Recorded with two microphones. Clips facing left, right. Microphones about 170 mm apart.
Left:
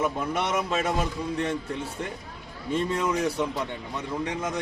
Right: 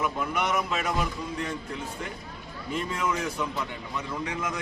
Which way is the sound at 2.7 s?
35° left (ahead or behind).